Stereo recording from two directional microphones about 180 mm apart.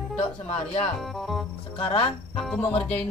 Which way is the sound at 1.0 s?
Centre (ahead or behind).